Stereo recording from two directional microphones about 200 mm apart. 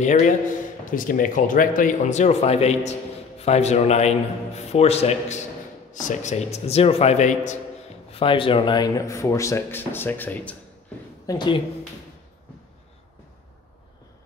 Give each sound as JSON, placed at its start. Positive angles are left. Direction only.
{"t": 0.0, "sound": "speech", "side_deg": 35}
{"t": 8.1, "sound": "speech", "side_deg": 25}
{"t": 11.2, "sound": "speech", "side_deg": 20}